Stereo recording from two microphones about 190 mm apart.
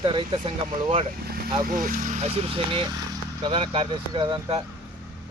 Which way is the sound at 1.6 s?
45° right (ahead or behind).